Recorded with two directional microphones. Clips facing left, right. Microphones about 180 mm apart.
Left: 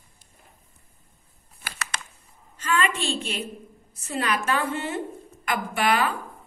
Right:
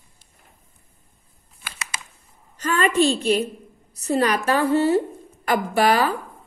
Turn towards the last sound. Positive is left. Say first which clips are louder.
# right 5 dB
turn(degrees=-35)  # may be behind; listen again after turning